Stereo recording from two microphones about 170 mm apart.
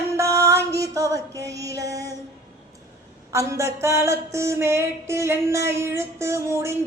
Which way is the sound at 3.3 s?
15° right (ahead or behind).